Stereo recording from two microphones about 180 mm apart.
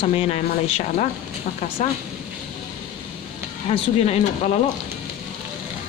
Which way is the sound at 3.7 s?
35° left (ahead or behind).